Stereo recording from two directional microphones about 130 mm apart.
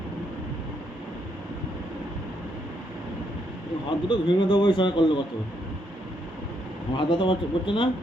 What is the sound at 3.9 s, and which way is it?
A man's voice, 40° left (ahead or behind).